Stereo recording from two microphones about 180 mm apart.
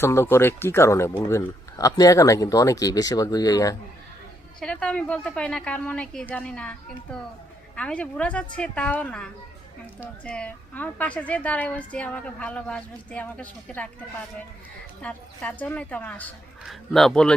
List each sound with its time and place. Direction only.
0.0 s a woman's voice: 15° left (ahead or behind)
4.6 s a woman's voice: 5° left (ahead or behind)
7.8 s a woman's voice: 5° left (ahead or behind)
15.0 s a woman's voice: 10° left (ahead or behind)